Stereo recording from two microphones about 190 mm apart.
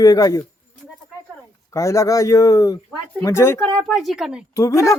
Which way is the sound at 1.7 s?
15° left (ahead or behind).